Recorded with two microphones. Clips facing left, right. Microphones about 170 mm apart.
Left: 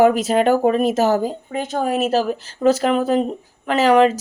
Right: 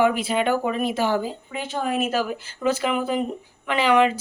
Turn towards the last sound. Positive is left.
turn(degrees=40)  # may be behind; listen again after turning